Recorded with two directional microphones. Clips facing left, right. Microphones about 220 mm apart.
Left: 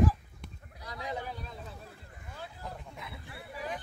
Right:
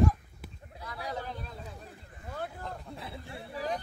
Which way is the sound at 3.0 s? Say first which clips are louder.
Right 4 dB; 30° right (ahead or behind).